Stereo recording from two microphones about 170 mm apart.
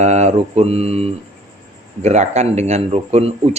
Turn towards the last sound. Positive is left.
turn(degrees=-35)  # may be behind; listen again after turning